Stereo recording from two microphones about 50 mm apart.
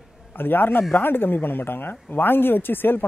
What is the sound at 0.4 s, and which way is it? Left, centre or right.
Speech, left.